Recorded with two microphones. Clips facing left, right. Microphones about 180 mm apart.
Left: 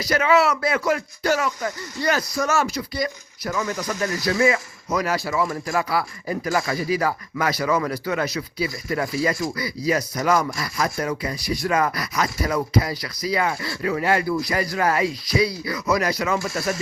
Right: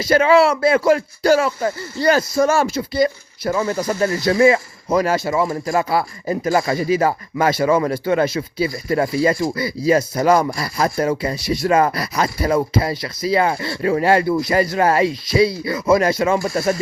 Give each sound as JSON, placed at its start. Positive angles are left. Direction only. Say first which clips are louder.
{"t": 0.0, "sound": "speech", "louder": "right 6 dB", "side_deg": -30}